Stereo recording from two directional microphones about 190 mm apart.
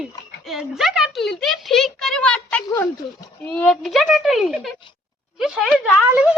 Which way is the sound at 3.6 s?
Centre (ahead or behind).